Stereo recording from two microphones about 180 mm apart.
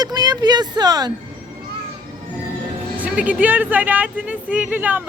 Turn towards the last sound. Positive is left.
turn(degrees=-10)  # may be behind; listen again after turning